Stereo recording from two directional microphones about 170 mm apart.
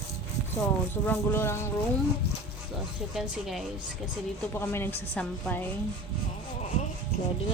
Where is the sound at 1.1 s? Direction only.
15° left (ahead or behind).